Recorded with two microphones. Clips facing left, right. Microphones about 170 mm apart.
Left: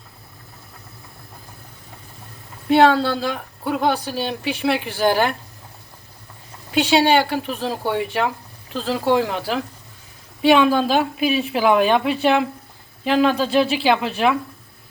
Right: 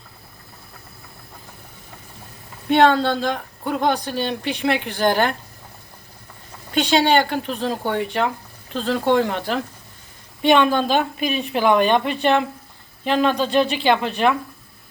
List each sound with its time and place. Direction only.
2.6 s speech: 5° left (ahead or behind)
6.7 s speech: 5° left (ahead or behind)